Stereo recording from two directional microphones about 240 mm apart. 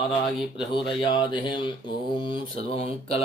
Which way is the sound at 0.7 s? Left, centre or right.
Centre.